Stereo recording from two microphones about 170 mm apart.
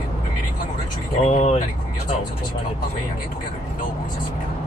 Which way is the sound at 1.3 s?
40° left (ahead or behind).